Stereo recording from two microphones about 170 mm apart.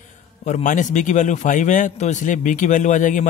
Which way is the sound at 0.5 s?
45° left (ahead or behind).